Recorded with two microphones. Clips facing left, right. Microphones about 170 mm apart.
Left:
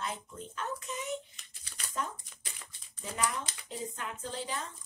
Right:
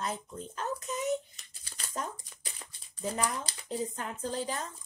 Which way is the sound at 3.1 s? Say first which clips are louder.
Left 1 dB; 35° right (ahead or behind).